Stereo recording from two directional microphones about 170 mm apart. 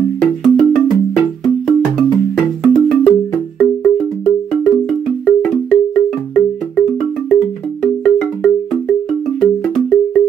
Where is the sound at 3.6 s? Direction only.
10° left (ahead or behind).